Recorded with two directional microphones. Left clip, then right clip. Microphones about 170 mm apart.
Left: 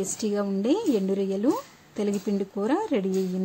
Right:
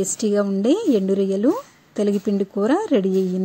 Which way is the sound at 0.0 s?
30° right (ahead or behind).